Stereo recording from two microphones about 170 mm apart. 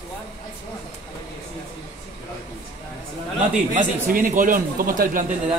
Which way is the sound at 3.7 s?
50° right (ahead or behind).